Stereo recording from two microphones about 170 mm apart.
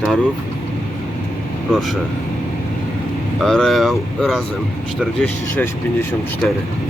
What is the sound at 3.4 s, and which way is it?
Speech, 5° left (ahead or behind).